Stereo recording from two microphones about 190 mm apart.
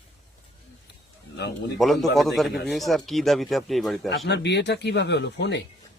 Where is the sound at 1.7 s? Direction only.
Centre (ahead or behind).